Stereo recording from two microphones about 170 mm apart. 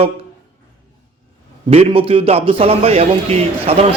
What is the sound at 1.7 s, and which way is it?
A man's voice, 35° right (ahead or behind).